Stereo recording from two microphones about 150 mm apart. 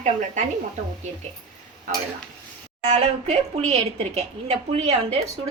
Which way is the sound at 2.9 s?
45° right (ahead or behind).